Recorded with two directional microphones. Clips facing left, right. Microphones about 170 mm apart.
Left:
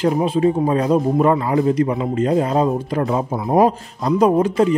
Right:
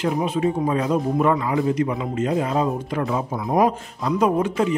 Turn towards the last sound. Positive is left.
turn(degrees=35)  # may be behind; listen again after turning